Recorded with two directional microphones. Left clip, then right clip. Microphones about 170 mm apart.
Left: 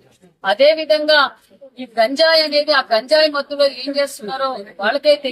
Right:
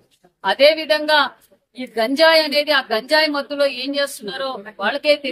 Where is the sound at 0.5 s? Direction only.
25° right (ahead or behind).